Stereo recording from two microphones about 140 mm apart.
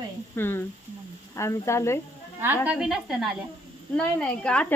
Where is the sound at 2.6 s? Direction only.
5° right (ahead or behind).